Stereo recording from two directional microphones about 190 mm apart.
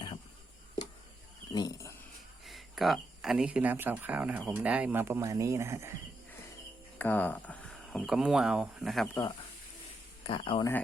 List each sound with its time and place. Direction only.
1.5 s dog: 15° left (ahead or behind)
2.5 s speech: centre (ahead or behind)
7.0 s speech: 10° left (ahead or behind)
10.2 s speech: 30° left (ahead or behind)